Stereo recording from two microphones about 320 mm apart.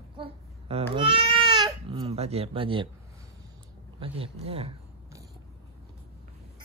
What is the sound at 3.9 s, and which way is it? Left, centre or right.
Speech, centre.